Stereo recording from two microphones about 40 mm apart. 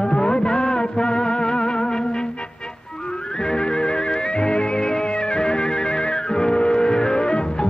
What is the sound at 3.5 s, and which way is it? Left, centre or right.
Music, left.